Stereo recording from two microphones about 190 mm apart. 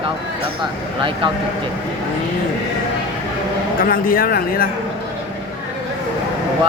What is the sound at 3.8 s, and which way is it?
Speech, 50° left (ahead or behind).